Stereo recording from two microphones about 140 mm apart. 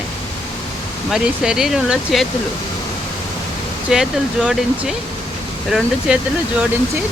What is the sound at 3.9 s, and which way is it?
Speech, 5° right (ahead or behind).